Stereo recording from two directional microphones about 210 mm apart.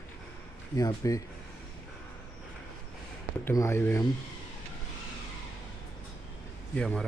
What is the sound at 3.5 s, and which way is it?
Speech, 10° left (ahead or behind).